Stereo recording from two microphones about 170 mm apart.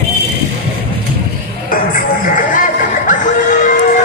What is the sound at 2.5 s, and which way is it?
Music, 50° left (ahead or behind).